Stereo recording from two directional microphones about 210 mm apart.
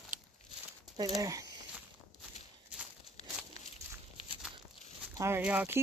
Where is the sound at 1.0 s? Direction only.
15° right (ahead or behind).